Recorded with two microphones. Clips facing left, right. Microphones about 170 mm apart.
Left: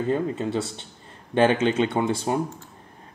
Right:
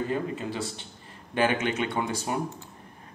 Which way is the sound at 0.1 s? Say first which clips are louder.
Left 6 dB; 25° left (ahead or behind).